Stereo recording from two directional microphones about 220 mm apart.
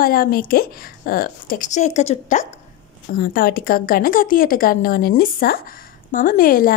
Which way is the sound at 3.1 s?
40° left (ahead or behind).